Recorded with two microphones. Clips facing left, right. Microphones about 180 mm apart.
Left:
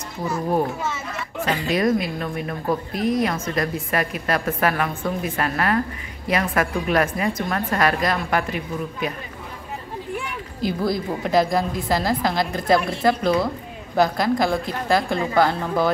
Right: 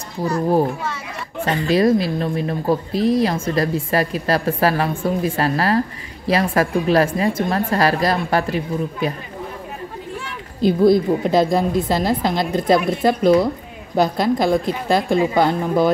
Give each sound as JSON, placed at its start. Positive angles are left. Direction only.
{"t": 1.7, "sound": "a woman's voice", "side_deg": -30}
{"t": 10.6, "sound": "a woman's voice", "side_deg": -20}